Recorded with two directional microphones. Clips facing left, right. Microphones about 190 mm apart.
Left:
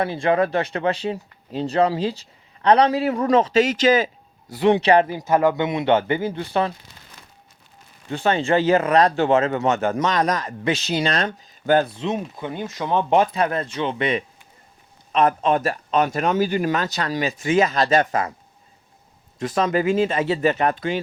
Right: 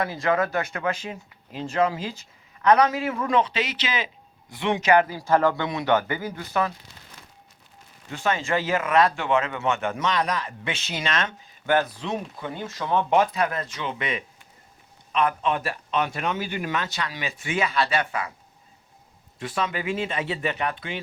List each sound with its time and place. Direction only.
0.0 s speech: 30° left (ahead or behind)
5.0 s speech: 20° left (ahead or behind)
8.1 s speech: 35° left (ahead or behind)
19.4 s speech: 40° left (ahead or behind)